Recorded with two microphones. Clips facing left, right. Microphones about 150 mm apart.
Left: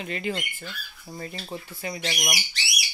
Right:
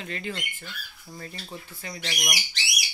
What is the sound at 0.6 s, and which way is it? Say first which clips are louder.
Speech: left 3 dB; 30° left (ahead or behind).